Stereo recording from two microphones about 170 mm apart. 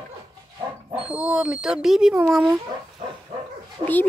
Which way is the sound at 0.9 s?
5° right (ahead or behind).